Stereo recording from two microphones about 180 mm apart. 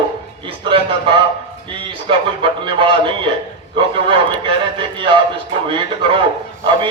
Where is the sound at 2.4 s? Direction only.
30° right (ahead or behind).